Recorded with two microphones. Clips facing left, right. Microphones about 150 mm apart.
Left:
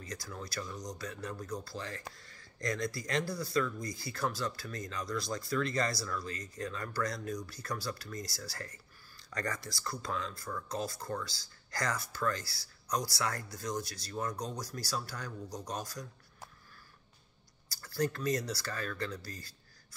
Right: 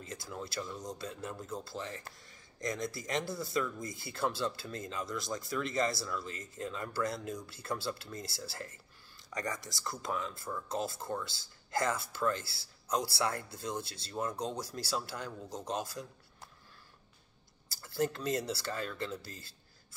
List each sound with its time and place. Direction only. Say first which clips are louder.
0.0 s speech: right 1 dB; 25° right (ahead or behind)
17.6 s speech: even; 20° right (ahead or behind)